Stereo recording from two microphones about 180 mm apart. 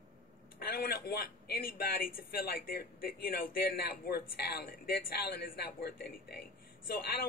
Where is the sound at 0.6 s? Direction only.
60° left (ahead or behind).